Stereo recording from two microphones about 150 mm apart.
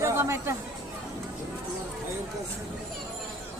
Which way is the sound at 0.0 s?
15° right (ahead or behind).